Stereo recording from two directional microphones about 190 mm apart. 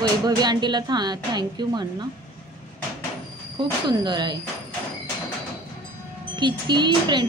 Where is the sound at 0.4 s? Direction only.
20° right (ahead or behind).